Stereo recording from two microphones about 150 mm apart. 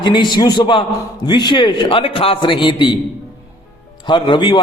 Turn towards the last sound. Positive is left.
turn(degrees=30)  # may be behind; listen again after turning